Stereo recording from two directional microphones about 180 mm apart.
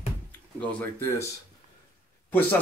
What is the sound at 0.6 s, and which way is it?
Speech, 10° left (ahead or behind).